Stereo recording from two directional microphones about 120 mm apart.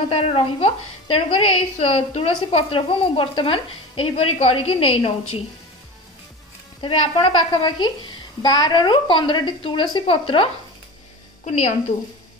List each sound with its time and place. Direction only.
0.1 s speech: 50° left (ahead or behind)
6.8 s a woman's voice: 45° left (ahead or behind)